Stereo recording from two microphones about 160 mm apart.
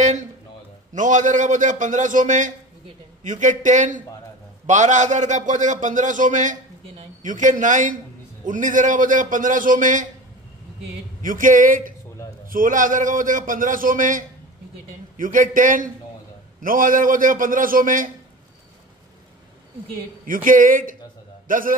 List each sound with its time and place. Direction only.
0.9 s a man's voice: 50° right (ahead or behind)
11.2 s a man's voice: 55° right (ahead or behind)
20.4 s a man's voice: 60° right (ahead or behind)